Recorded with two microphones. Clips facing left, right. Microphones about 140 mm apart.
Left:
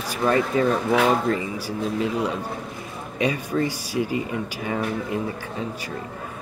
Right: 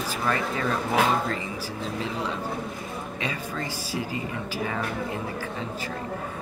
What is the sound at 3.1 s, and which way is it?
Speech, 15° left (ahead or behind).